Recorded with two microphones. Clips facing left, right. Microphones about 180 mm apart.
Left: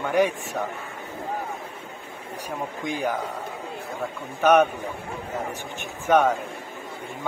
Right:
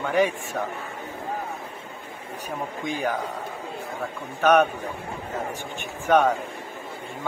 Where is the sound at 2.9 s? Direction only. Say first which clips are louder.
Even; 10° left (ahead or behind).